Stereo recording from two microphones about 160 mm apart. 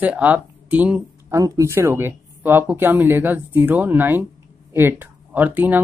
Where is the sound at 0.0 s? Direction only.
10° right (ahead or behind).